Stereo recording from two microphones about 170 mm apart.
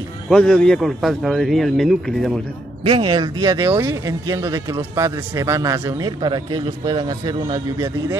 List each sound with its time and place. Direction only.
0.3 s speech: 5° left (ahead or behind)
2.8 s a man's voice: 30° right (ahead or behind)